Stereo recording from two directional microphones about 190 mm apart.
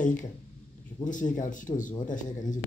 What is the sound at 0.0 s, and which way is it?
Speech, 40° left (ahead or behind).